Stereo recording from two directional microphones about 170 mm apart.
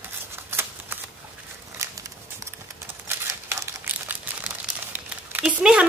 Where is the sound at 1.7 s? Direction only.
20° right (ahead or behind).